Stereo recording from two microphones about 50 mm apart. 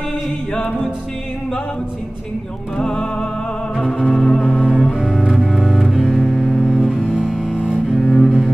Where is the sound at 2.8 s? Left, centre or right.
Centre.